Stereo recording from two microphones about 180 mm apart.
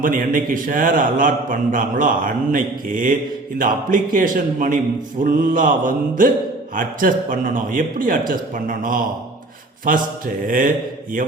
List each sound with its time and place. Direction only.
0.0 s a man's voice: 50° right (ahead or behind)